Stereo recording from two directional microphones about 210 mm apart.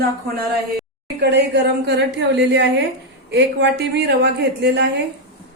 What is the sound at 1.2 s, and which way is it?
A woman's voice, 50° right (ahead or behind).